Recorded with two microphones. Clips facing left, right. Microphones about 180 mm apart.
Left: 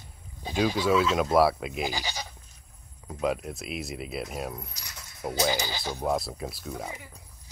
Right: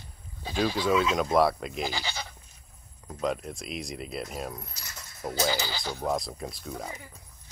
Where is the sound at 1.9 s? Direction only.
15° left (ahead or behind).